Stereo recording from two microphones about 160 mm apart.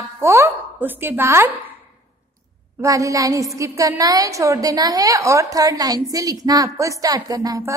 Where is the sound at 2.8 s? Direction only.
20° right (ahead or behind).